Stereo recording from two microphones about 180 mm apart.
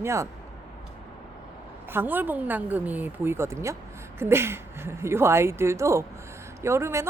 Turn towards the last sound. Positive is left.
turn(degrees=-15)  # may be behind; listen again after turning